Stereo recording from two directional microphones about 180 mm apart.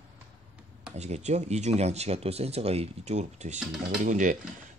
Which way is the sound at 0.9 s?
40° right (ahead or behind).